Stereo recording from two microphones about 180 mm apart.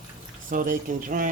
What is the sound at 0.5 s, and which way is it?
Speech, 50° right (ahead or behind).